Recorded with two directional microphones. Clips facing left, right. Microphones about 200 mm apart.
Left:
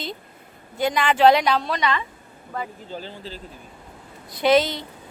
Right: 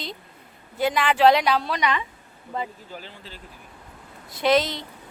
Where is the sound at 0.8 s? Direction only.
Centre (ahead or behind).